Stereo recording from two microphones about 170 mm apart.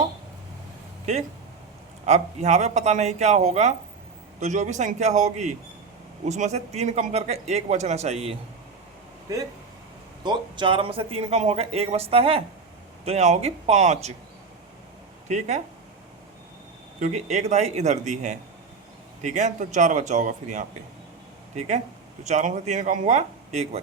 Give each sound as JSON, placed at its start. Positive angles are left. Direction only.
{"t": 2.0, "sound": "speech", "side_deg": -40}
{"t": 10.2, "sound": "speech", "side_deg": -30}
{"t": 15.3, "sound": "speech", "side_deg": -45}
{"t": 17.0, "sound": "speech", "side_deg": -45}